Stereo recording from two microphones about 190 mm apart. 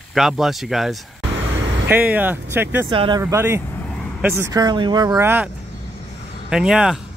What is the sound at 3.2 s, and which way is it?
Speech, 15° right (ahead or behind).